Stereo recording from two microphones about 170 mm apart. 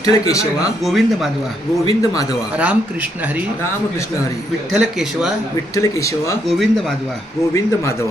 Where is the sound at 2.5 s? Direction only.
10° right (ahead or behind).